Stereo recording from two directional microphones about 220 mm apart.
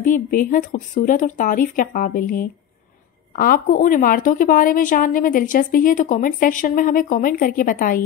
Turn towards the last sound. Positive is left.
turn(degrees=40)  # may be behind; listen again after turning